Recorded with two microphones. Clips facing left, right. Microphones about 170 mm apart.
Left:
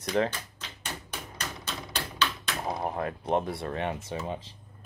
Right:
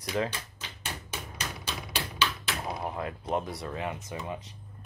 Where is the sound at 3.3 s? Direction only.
25° left (ahead or behind).